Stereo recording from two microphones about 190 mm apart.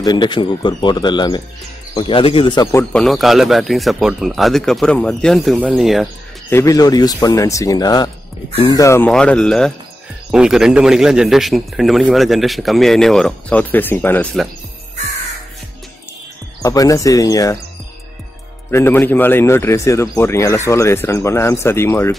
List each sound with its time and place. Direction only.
0.0 s speech: 25° left (ahead or behind)
2.7 s a man's voice: 10° left (ahead or behind)
6.5 s a man's voice: 20° left (ahead or behind)
9.1 s a man's voice: 5° left (ahead or behind)
16.6 s a man's voice: 15° left (ahead or behind)
18.7 s a man's voice: 10° left (ahead or behind)